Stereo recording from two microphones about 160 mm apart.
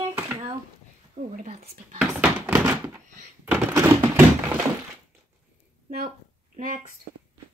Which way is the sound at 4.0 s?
10° right (ahead or behind).